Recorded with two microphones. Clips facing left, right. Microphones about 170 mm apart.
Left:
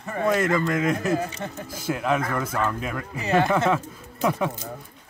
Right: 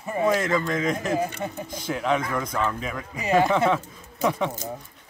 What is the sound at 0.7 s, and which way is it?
Speech, 5° left (ahead or behind).